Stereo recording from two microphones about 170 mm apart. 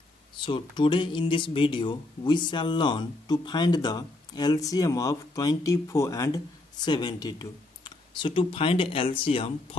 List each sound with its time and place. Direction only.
0.4 s speech: 30° left (ahead or behind)